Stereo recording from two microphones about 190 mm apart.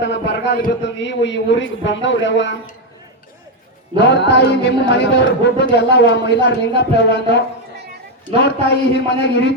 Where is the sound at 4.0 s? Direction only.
65° left (ahead or behind).